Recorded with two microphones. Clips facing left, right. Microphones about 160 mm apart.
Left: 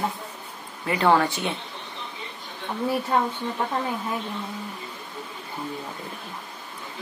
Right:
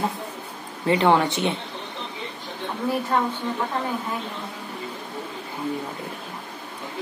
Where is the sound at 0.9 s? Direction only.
20° right (ahead or behind).